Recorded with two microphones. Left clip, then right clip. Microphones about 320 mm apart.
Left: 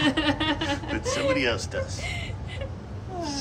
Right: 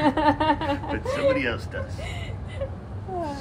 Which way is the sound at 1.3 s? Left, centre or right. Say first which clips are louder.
Left 1 dB; centre.